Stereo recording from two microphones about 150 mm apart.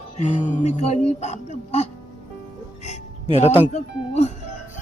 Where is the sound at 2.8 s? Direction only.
45° left (ahead or behind).